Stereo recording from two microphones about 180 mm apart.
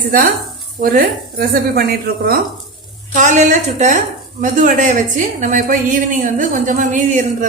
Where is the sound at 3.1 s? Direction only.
45° right (ahead or behind).